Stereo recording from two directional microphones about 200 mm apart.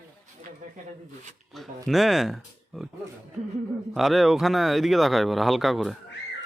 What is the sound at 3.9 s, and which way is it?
Speech, centre (ahead or behind).